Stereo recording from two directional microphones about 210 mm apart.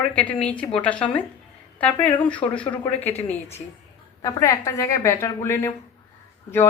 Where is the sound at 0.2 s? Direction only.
5° left (ahead or behind).